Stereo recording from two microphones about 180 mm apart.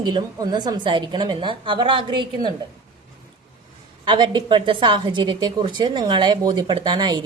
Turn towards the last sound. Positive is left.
turn(degrees=-25)  # may be behind; listen again after turning